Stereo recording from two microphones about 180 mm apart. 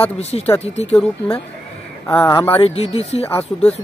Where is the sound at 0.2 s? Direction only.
35° left (ahead or behind).